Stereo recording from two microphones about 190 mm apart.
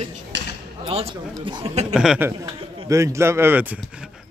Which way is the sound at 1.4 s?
25° right (ahead or behind).